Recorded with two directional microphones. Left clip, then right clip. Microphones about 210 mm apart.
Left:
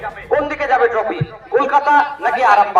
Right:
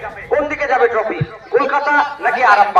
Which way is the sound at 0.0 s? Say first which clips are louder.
Even; 25° left (ahead or behind).